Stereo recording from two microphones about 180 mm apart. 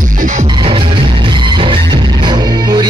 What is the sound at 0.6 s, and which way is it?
Music, 30° right (ahead or behind).